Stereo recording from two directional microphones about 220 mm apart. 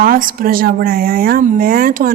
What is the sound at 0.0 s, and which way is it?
A woman's voice, 40° right (ahead or behind).